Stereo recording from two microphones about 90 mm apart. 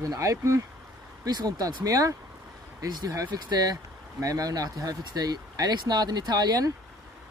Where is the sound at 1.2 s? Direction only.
50° right (ahead or behind).